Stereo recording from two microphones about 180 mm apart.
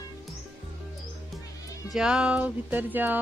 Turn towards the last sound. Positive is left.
turn(degrees=-10)  # may be behind; listen again after turning